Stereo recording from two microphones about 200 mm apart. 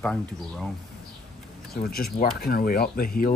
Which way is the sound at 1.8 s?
45° left (ahead or behind).